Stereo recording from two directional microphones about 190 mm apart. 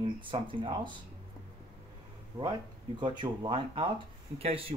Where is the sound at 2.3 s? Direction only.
20° right (ahead or behind).